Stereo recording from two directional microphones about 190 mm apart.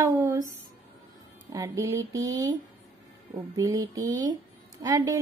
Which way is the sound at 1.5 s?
15° right (ahead or behind).